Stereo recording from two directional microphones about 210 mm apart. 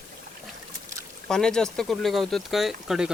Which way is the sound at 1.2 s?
5° left (ahead or behind).